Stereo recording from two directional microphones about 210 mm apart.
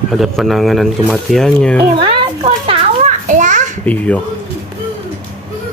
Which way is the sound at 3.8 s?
5° left (ahead or behind).